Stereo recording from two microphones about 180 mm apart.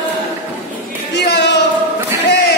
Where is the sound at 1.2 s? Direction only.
70° left (ahead or behind).